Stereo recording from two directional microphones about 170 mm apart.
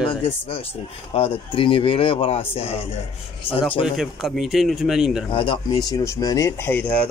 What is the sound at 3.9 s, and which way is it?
Speech, centre (ahead or behind).